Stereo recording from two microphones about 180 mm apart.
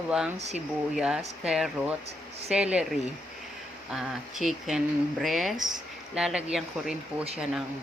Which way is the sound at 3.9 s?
Centre (ahead or behind).